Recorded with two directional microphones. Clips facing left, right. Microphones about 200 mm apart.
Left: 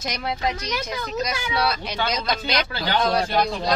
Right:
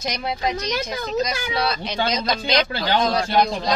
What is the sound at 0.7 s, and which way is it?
Speech, 30° right (ahead or behind).